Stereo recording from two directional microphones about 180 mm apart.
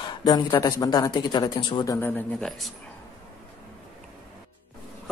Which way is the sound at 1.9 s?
10° left (ahead or behind).